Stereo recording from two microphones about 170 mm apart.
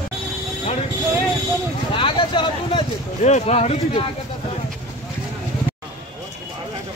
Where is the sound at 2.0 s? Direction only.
30° left (ahead or behind).